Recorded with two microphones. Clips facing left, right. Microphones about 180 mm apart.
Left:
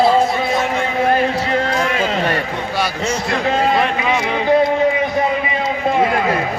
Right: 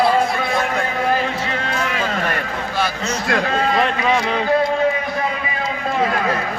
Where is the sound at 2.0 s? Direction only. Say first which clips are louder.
Left 4 dB; 25° left (ahead or behind).